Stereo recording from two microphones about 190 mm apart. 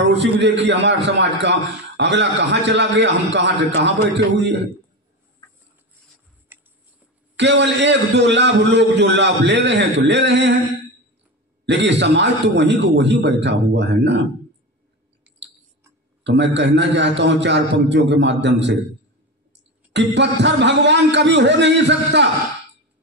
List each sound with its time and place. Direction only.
0.0 s a man's voice: 65° right (ahead or behind)
7.3 s a man's voice: 65° right (ahead or behind)
11.6 s a man's voice: 65° right (ahead or behind)
15.3 s a sound: 10° right (ahead or behind)
16.3 s a man's voice: 65° right (ahead or behind)
19.9 s a man's voice: 65° right (ahead or behind)